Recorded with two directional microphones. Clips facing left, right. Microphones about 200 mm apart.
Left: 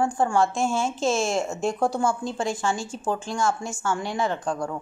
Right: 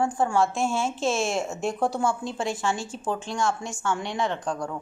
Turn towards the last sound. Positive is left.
turn(degrees=0)  # may be behind; listen again after turning